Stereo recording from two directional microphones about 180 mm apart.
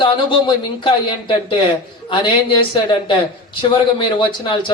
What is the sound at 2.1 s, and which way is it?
Speech, 30° left (ahead or behind).